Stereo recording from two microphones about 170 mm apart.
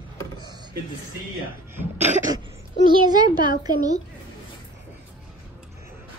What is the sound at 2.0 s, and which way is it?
Throat clearing, 45° right (ahead or behind).